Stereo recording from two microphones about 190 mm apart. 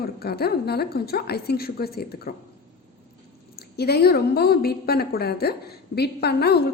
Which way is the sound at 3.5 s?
55° left (ahead or behind).